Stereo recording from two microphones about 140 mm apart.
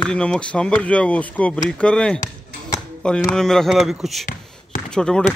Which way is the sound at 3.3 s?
5° left (ahead or behind).